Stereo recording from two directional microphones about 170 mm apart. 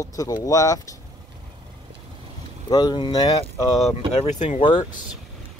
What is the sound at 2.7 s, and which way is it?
Speech, 25° left (ahead or behind).